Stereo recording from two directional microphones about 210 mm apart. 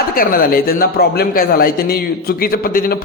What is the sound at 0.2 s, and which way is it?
A man's voice, 45° left (ahead or behind).